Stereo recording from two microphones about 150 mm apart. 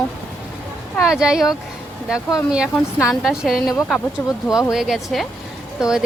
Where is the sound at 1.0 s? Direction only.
5° right (ahead or behind).